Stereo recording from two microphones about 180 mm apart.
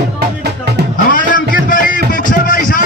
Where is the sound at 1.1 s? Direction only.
50° left (ahead or behind).